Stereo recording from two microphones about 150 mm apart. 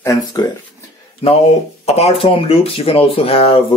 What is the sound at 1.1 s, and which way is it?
Speech, 40° left (ahead or behind).